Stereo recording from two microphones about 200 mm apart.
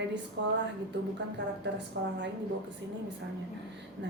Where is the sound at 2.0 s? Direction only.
55° right (ahead or behind).